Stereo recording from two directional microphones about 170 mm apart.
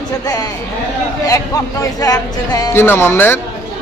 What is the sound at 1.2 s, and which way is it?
Speech, 20° left (ahead or behind).